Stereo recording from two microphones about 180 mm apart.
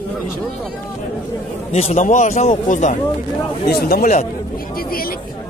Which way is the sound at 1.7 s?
40° left (ahead or behind).